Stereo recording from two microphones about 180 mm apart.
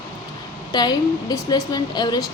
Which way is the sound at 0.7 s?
25° left (ahead or behind).